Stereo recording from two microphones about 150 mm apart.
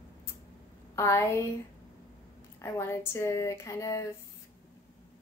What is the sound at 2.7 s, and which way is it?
A woman's voice, 15° left (ahead or behind).